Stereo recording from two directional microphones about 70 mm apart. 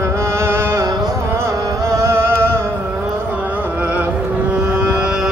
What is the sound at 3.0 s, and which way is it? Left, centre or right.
Music, right.